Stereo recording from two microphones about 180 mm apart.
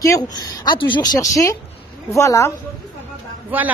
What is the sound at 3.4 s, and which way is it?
Speech, 10° right (ahead or behind).